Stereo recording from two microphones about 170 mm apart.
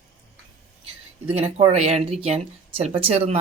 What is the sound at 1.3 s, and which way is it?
Speech, 35° right (ahead or behind).